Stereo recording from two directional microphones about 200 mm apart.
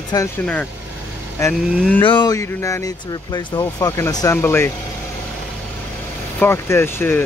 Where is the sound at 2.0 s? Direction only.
20° left (ahead or behind).